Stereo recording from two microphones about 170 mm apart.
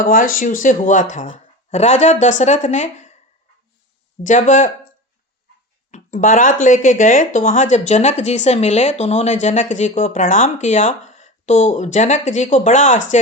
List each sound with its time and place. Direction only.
0.0 s speech: 55° left (ahead or behind)
4.2 s speech: 50° left (ahead or behind)
5.9 s speech: 50° left (ahead or behind)